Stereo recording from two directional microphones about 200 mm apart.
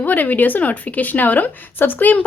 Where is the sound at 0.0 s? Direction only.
10° left (ahead or behind).